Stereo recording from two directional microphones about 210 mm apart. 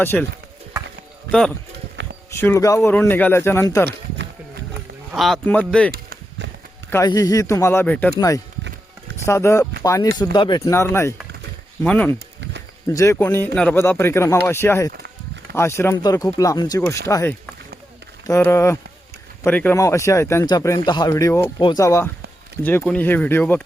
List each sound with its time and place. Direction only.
0.0 s speech: 10° left (ahead or behind)
1.3 s speech: 5° left (ahead or behind)
2.0 s a sound: 55° right (ahead or behind)
2.3 s speech: 10° left (ahead or behind)
5.1 s speech: centre (ahead or behind)
5.9 s a sound: 45° right (ahead or behind)
6.9 s speech: 15° left (ahead or behind)
9.2 s speech: 15° left (ahead or behind)